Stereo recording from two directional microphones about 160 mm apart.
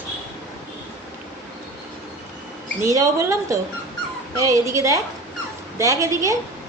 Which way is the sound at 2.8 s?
20° right (ahead or behind).